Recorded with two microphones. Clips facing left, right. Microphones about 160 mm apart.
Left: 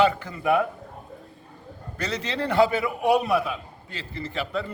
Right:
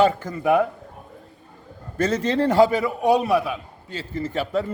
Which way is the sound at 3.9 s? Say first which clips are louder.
Right 7 dB; 45° right (ahead or behind).